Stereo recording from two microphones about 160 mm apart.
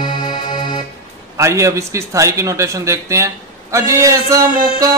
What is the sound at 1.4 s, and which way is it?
A man's voice, 20° right (ahead or behind).